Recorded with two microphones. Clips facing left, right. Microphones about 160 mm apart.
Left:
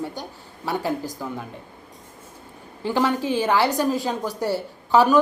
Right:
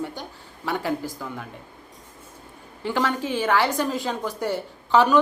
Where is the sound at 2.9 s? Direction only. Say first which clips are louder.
Left 3 dB; 15° left (ahead or behind).